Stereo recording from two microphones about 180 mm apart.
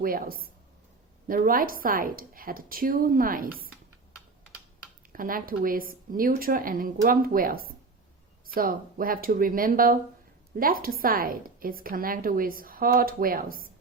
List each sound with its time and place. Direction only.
0.0 s a woman's voice: 55° right (ahead or behind)
5.1 s a woman's voice: 50° right (ahead or behind)